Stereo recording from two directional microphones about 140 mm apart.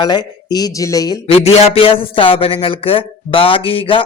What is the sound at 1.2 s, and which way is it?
A man's voice, 45° left (ahead or behind).